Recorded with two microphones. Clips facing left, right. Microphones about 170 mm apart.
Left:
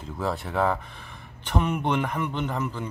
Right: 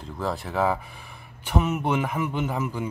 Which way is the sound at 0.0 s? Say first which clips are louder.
Even; centre (ahead or behind).